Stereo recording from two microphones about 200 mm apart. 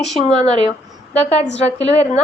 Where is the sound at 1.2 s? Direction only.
30° left (ahead or behind).